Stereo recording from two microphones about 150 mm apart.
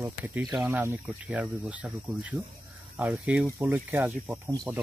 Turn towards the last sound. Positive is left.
turn(degrees=-10)  # may be behind; listen again after turning